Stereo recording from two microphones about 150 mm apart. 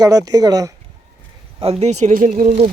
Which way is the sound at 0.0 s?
25° right (ahead or behind).